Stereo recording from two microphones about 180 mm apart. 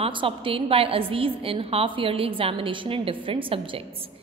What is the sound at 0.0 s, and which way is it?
A woman's voice, 30° right (ahead or behind).